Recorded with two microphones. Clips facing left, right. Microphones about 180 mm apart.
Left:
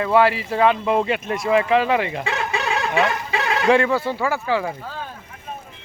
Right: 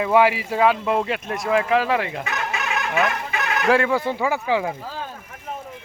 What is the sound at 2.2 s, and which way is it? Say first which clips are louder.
Chicken: left 3 dB; 30° left (ahead or behind).